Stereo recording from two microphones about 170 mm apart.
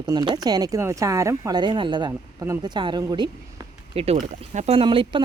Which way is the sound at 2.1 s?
15° right (ahead or behind).